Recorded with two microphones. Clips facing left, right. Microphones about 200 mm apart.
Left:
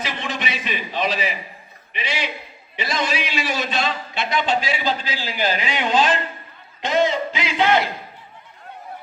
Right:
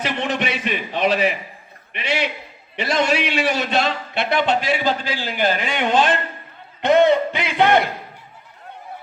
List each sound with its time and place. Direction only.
0.0 s a man's voice: 65° right (ahead or behind)